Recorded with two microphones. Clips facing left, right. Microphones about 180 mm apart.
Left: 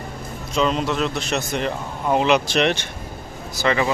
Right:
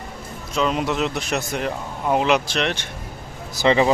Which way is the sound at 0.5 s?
5° right (ahead or behind).